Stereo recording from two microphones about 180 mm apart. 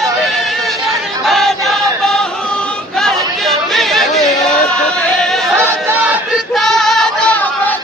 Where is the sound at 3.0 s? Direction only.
Centre (ahead or behind).